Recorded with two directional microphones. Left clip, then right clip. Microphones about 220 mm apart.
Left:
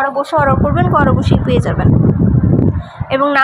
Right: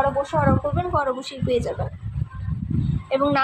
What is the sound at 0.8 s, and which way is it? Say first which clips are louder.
Speech: left 10 dB; 25° left (ahead or behind).